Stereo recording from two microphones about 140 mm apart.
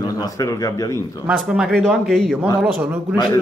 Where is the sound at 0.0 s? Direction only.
25° left (ahead or behind).